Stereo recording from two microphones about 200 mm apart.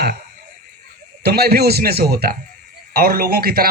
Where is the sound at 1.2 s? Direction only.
50° right (ahead or behind).